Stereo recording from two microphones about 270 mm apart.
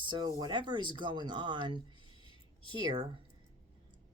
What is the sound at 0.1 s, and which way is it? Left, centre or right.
Speech, centre.